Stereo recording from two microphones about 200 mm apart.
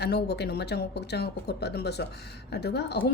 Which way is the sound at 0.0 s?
55° left (ahead or behind).